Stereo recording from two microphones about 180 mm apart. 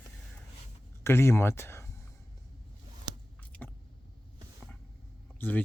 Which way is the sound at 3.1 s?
25° right (ahead or behind).